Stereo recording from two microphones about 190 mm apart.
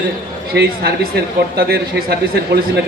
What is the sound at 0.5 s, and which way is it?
Speech, 55° right (ahead or behind).